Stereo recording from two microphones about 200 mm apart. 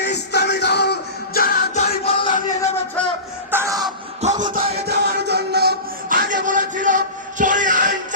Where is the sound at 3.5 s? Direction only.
15° right (ahead or behind).